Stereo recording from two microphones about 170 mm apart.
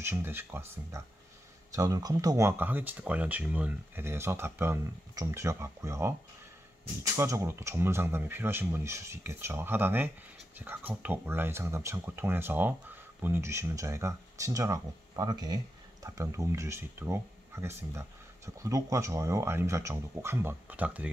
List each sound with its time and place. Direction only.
0.0 s speech: 15° right (ahead or behind)
7.2 s speech: 15° right (ahead or behind)